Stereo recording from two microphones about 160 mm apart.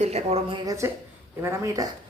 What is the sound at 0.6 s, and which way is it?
Speech, 20° right (ahead or behind).